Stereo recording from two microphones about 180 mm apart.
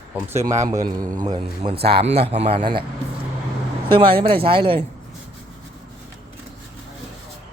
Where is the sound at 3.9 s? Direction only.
30° right (ahead or behind).